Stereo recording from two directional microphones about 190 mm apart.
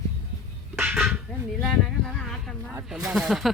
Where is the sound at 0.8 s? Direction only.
10° right (ahead or behind).